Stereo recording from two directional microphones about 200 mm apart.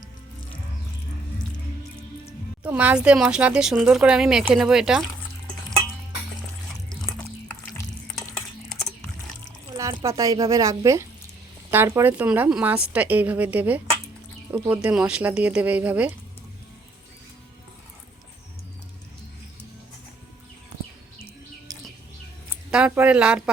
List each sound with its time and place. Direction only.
2.6 s speech: 5° right (ahead or behind)
8.1 s stir: centre (ahead or behind)
9.7 s a woman's voice: 15° right (ahead or behind)
21.7 s bird: 20° right (ahead or behind)
22.7 s speech: 5° right (ahead or behind)